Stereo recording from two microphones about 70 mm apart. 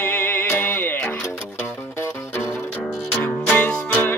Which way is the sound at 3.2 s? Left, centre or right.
Left.